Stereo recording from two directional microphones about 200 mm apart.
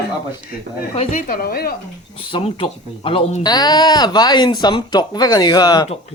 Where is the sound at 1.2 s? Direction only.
45° left (ahead or behind).